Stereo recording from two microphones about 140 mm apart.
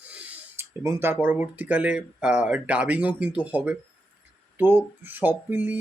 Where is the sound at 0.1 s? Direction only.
10° right (ahead or behind).